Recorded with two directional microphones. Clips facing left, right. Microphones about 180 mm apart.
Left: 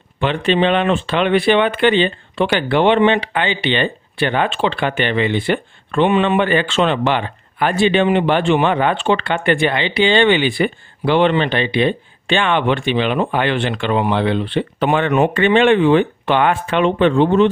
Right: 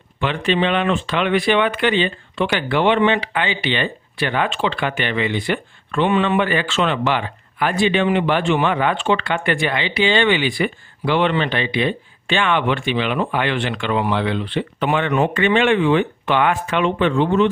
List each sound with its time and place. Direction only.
0.2 s speech: 30° left (ahead or behind)